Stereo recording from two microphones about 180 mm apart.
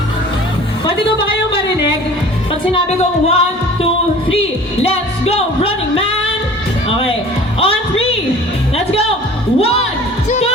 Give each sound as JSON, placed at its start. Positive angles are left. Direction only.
{"t": 2.7, "sound": "music", "side_deg": 35}
{"t": 4.8, "sound": "music", "side_deg": 35}
{"t": 7.6, "sound": "music", "side_deg": 30}
{"t": 9.6, "sound": "speech", "side_deg": 35}